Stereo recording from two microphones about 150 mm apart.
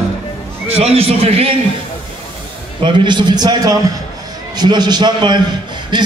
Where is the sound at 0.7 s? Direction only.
40° right (ahead or behind).